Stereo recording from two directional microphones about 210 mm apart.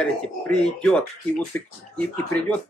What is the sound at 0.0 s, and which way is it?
Speech, 5° left (ahead or behind).